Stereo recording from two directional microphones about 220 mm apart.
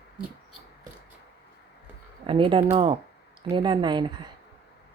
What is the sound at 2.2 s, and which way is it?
Speech, 25° right (ahead or behind).